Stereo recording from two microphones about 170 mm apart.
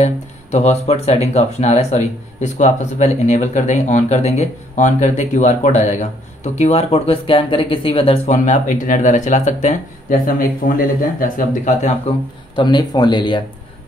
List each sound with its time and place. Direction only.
0.0 s speech: 40° left (ahead or behind)
12.5 s speech: 25° left (ahead or behind)